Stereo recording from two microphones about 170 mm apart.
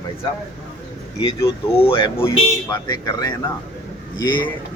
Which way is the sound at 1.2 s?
30° left (ahead or behind).